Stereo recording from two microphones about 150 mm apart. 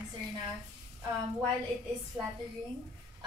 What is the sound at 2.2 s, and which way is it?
Speech, 10° right (ahead or behind).